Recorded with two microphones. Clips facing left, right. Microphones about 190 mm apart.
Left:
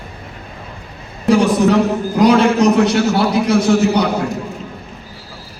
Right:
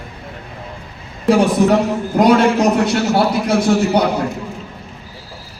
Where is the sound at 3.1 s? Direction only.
55° right (ahead or behind).